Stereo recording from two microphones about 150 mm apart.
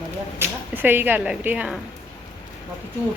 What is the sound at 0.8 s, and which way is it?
A woman's voice, 10° right (ahead or behind).